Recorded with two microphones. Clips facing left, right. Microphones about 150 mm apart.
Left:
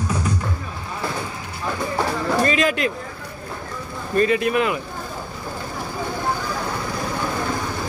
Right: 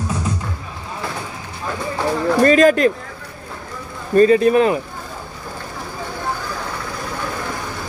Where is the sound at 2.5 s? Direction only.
40° right (ahead or behind).